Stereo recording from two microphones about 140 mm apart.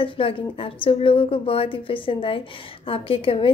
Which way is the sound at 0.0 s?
40° left (ahead or behind).